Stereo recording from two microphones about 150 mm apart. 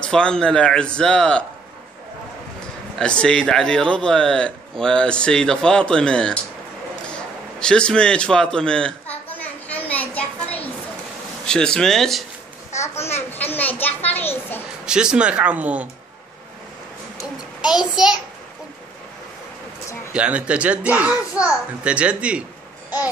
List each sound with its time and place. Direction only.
0.0 s a man's voice: 5° left (ahead or behind)
3.0 s a man's voice: 5° left (ahead or behind)
7.1 s a sound: 5° left (ahead or behind)
11.4 s a man's voice: 5° left (ahead or behind)
12.8 s a sound: 15° left (ahead or behind)
14.9 s a child's voice: 5° right (ahead or behind)
17.6 s a man's voice: 5° right (ahead or behind)
20.1 s a child's voice: 5° right (ahead or behind)